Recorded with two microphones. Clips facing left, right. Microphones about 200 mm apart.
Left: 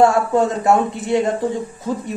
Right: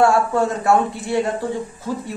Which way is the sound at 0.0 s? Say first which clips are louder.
Left 2 dB; 20° left (ahead or behind).